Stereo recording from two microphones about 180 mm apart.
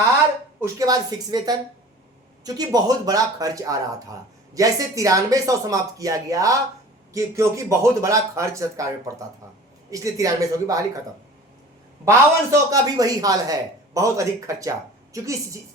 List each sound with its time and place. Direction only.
0.6 s a man's voice: 20° right (ahead or behind)
12.0 s a man's voice: 20° right (ahead or behind)